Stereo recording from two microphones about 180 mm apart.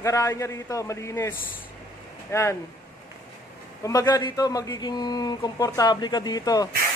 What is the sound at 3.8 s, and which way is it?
Speech, 20° left (ahead or behind).